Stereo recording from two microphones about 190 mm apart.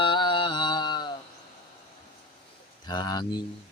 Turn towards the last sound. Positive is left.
turn(degrees=20)  # may be behind; listen again after turning